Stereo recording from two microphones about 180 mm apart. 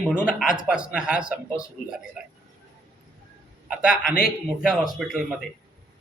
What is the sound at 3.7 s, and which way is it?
A man's voice, 5° right (ahead or behind).